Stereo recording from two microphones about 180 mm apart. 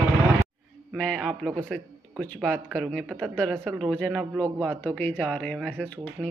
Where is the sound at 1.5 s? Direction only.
10° right (ahead or behind).